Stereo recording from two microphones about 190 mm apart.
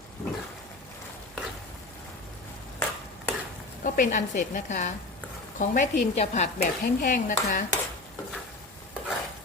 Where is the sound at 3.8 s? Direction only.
45° left (ahead or behind).